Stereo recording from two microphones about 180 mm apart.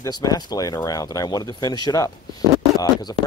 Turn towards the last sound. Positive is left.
turn(degrees=25)  # may be behind; listen again after turning